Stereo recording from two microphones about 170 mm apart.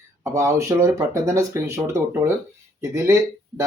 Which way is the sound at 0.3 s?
15° right (ahead or behind).